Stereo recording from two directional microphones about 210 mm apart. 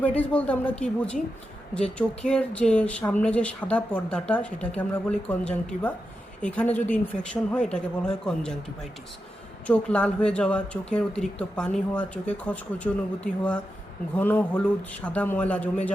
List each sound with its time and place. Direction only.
0.2 s a man's voice: 5° left (ahead or behind)
9.6 s a man's voice: 5° left (ahead or behind)